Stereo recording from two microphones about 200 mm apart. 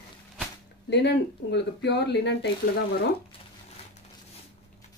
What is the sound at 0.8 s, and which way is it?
Speech, 55° left (ahead or behind).